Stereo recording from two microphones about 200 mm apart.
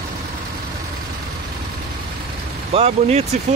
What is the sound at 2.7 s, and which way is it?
Speech, 30° right (ahead or behind).